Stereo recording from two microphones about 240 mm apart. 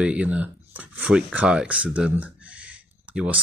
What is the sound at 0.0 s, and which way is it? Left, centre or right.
Speech, centre.